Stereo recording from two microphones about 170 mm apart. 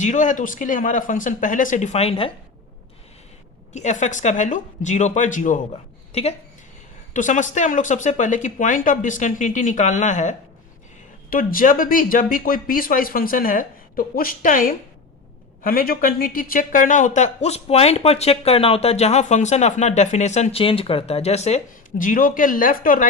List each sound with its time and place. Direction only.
0.0 s speech: 45° left (ahead or behind)
3.7 s speech: 45° left (ahead or behind)
7.1 s speech: 50° left (ahead or behind)